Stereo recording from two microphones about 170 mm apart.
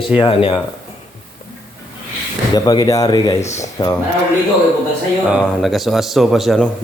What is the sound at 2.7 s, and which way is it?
Speech, 20° left (ahead or behind).